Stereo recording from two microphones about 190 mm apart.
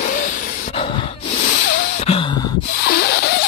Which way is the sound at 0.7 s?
30° left (ahead or behind).